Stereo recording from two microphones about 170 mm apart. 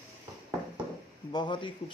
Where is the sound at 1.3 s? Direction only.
25° left (ahead or behind).